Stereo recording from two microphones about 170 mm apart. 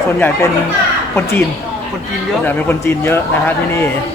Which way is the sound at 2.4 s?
15° left (ahead or behind).